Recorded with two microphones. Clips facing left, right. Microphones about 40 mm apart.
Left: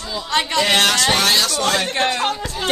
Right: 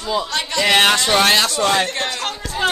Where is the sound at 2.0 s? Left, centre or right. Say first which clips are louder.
Left 4 dB; centre.